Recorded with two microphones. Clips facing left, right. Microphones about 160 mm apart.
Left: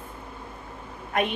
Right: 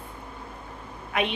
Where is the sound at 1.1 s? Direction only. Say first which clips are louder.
Left 1 dB; 45° left (ahead or behind).